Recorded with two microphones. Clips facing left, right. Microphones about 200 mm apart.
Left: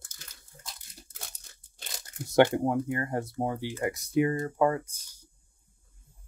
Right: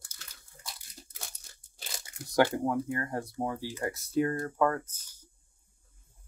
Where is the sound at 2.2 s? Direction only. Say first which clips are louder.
Left 4 dB; 25° left (ahead or behind).